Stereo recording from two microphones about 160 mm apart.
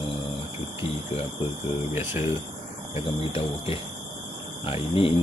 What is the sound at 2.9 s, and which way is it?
Speech, 35° left (ahead or behind).